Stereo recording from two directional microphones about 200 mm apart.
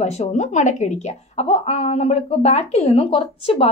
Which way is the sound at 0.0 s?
35° left (ahead or behind).